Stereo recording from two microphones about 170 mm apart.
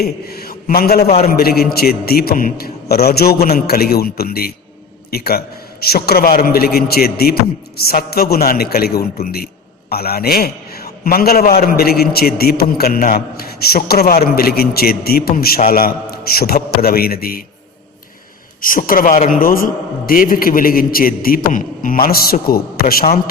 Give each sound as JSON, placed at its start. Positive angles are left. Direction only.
{"t": 0.0, "sound": "a man's voice", "side_deg": 65}
{"t": 1.0, "sound": "a man's voice", "side_deg": 40}
{"t": 1.3, "sound": "a man's voice", "side_deg": 65}
{"t": 18.6, "sound": "a man's voice", "side_deg": 55}